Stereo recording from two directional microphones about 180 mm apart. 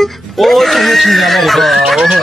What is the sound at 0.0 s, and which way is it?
Speech, centre (ahead or behind).